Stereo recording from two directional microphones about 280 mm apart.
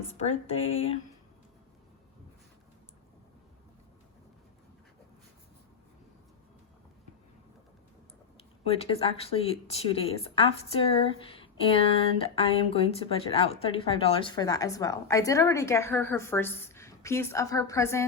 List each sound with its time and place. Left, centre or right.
0.1 s speech: left
8.6 s speech: left